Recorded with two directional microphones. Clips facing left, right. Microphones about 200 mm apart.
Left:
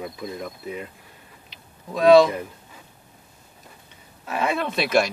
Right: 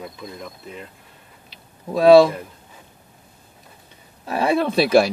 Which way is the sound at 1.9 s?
30° right (ahead or behind).